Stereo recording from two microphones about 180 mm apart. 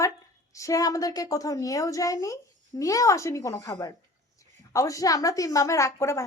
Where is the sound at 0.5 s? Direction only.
20° left (ahead or behind).